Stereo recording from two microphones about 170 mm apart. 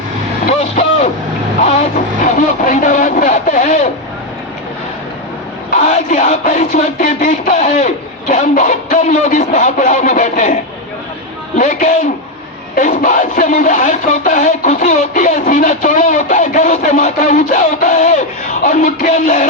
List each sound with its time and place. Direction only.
1.6 s vehicle: 50° left (ahead or behind)
5.7 s speech: 45° left (ahead or behind)